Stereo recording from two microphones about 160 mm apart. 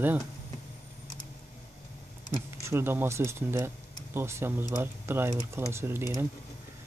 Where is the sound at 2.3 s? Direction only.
15° right (ahead or behind).